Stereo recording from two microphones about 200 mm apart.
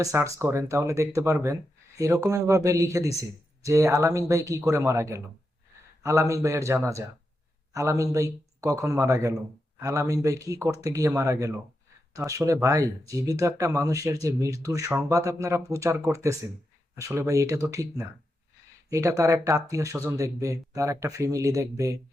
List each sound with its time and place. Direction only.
0.0 s speech: 15° right (ahead or behind)